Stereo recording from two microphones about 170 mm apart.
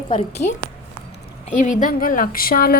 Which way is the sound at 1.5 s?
45° left (ahead or behind).